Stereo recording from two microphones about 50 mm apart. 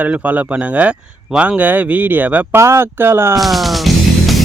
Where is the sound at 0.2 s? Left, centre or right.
Right.